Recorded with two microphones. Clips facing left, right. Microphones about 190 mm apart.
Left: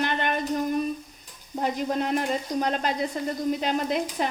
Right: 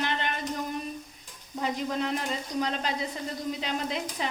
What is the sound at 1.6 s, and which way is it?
Frying, 50° left (ahead or behind).